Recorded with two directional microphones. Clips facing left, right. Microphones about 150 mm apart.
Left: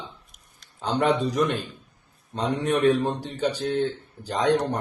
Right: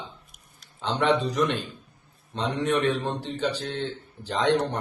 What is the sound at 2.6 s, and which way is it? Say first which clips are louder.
Speech: left 4 dB; 10° left (ahead or behind).